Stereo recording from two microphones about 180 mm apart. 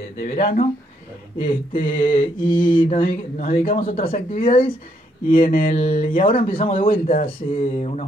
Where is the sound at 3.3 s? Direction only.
45° left (ahead or behind).